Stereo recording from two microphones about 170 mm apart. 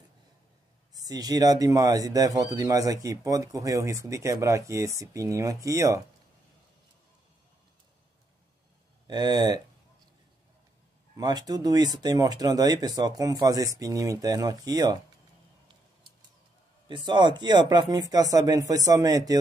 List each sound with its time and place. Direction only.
0.9 s speech: 20° right (ahead or behind)
9.0 s speech: 25° right (ahead or behind)
11.1 s speech: 25° right (ahead or behind)
16.8 s speech: 25° right (ahead or behind)